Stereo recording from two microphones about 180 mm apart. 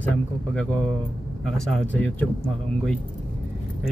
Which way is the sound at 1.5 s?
5° left (ahead or behind).